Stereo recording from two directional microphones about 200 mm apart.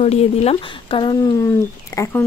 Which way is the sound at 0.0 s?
30° left (ahead or behind).